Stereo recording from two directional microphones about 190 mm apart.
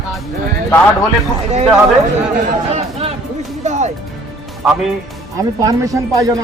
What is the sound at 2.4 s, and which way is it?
Speech, 35° right (ahead or behind).